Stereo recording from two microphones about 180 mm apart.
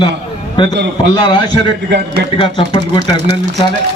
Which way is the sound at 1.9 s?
65° right (ahead or behind).